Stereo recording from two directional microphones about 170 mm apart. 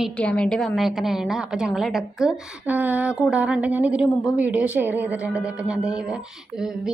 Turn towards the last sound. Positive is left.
turn(degrees=-5)  # may be behind; listen again after turning